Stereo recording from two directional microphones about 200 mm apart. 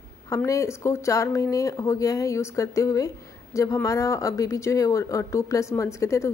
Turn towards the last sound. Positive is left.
turn(degrees=15)  # may be behind; listen again after turning